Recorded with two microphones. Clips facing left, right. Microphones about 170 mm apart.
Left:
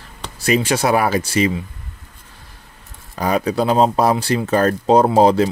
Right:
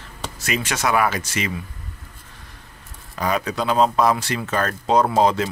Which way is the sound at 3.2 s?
35° left (ahead or behind).